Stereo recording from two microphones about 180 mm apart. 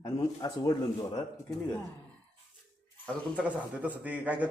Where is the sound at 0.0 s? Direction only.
20° left (ahead or behind).